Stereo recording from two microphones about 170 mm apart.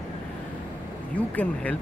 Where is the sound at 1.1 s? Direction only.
10° left (ahead or behind).